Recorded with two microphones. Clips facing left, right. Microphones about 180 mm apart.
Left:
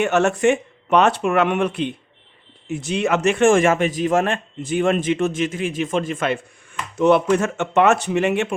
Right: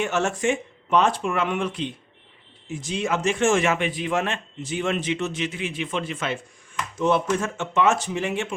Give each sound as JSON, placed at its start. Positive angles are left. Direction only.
{"t": 0.0, "sound": "speech", "side_deg": 65}
{"t": 7.0, "sound": "speech", "side_deg": 65}